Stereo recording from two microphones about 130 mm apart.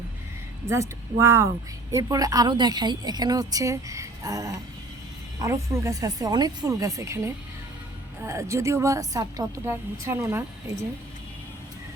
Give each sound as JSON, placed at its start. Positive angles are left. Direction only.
{"t": 0.7, "sound": "a woman's voice", "side_deg": -20}